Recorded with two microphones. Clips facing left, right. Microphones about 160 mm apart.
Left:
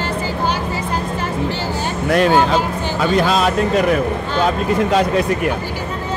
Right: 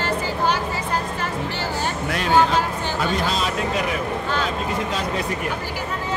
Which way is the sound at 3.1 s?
60° left (ahead or behind).